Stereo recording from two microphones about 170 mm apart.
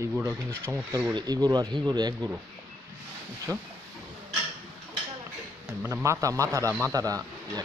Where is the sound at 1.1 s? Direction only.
25° right (ahead or behind).